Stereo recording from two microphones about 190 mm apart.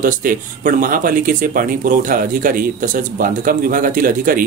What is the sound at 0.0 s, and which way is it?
Speech, 45° right (ahead or behind).